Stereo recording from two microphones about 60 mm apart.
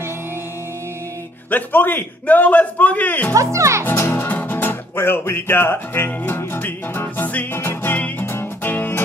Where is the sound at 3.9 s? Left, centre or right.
Left.